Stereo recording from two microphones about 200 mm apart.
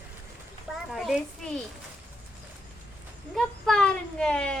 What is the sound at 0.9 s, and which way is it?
Speech, centre (ahead or behind).